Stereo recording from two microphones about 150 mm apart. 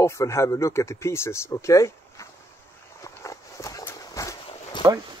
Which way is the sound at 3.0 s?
20° left (ahead or behind).